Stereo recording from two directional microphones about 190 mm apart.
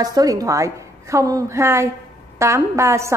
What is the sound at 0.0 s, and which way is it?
A woman's voice, 20° right (ahead or behind).